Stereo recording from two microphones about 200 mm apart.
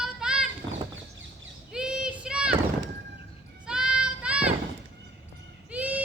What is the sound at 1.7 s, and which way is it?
Child singing, 5° right (ahead or behind).